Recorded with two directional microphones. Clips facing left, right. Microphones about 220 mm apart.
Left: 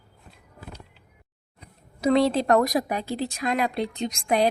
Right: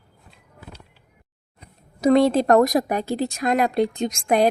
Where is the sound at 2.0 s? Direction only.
45° right (ahead or behind).